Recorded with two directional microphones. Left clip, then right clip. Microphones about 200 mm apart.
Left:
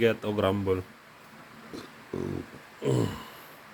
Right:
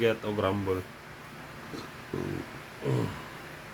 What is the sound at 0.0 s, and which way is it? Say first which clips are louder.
Speech: left 2 dB; 30° left (ahead or behind).